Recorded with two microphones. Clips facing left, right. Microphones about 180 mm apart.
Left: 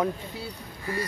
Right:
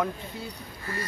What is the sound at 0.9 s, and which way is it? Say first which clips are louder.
Quack: left 4 dB; 15° left (ahead or behind).